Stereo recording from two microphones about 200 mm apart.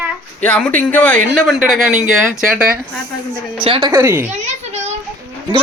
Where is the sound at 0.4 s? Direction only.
5° left (ahead or behind).